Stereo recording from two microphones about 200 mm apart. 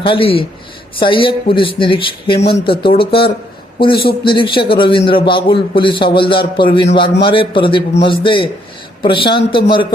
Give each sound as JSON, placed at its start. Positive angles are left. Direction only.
{"t": 0.0, "sound": "speech", "side_deg": 25}